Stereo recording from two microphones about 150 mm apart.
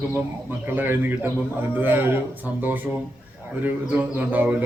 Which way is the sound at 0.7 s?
15° right (ahead or behind).